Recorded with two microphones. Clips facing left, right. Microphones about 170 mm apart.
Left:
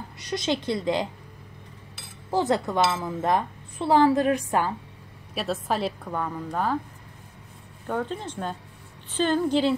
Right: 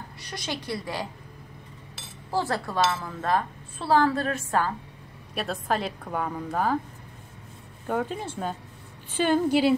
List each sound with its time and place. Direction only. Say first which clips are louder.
0.2 s a woman's voice: left 8 dB; 20° left (ahead or behind)
2.3 s speech: left 4 dB; 20° left (ahead or behind)
5.3 s a woman's voice: left 1 dB; centre (ahead or behind)
7.8 s speech: right 1 dB; 10° right (ahead or behind)